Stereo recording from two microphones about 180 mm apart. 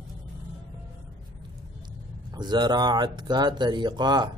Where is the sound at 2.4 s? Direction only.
25° right (ahead or behind).